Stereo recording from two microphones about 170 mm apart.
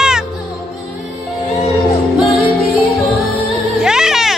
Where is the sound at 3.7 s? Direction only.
5° right (ahead or behind).